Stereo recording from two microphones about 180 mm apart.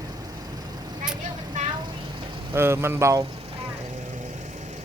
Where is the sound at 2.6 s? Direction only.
15° right (ahead or behind).